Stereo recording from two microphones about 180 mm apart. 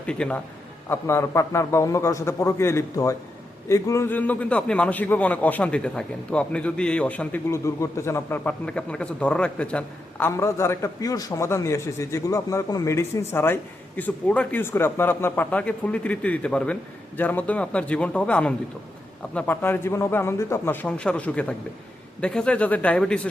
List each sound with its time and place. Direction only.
0.0 s a man's voice: 5° left (ahead or behind)